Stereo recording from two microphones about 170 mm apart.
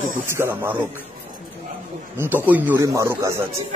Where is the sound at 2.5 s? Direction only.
10° right (ahead or behind).